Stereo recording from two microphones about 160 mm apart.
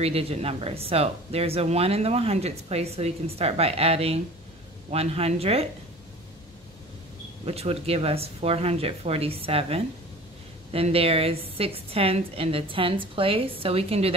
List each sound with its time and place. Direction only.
0.0 s speech: 40° right (ahead or behind)
7.4 s speech: 40° right (ahead or behind)